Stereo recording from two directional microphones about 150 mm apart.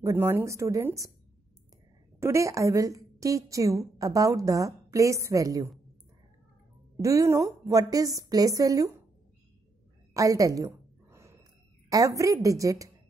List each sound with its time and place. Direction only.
0.0 s a woman's voice: 15° right (ahead or behind)
2.1 s a woman's voice: 20° right (ahead or behind)
7.0 s a woman's voice: 20° right (ahead or behind)
10.1 s a sound: 20° right (ahead or behind)
11.9 s a woman's voice: 20° right (ahead or behind)